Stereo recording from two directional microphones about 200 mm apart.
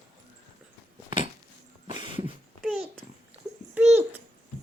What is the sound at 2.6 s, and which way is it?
Babbling, centre (ahead or behind).